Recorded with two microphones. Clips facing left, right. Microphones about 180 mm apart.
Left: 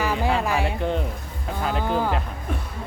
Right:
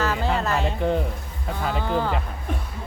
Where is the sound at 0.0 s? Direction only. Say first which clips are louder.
Left 1 dB; 10° left (ahead or behind).